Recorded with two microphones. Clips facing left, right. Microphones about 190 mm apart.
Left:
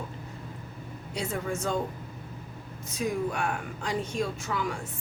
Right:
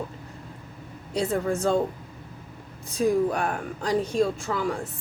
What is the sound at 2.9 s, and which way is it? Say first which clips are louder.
A woman's voice: right 7 dB; 35° right (ahead or behind).